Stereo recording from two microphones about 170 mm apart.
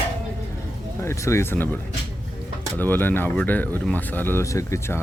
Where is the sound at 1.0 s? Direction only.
15° left (ahead or behind).